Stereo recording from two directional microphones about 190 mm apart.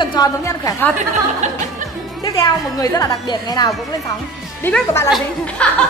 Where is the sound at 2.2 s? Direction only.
20° left (ahead or behind).